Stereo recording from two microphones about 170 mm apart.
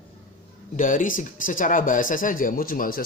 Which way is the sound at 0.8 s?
50° left (ahead or behind).